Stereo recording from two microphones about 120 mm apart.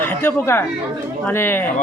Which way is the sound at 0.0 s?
15° left (ahead or behind).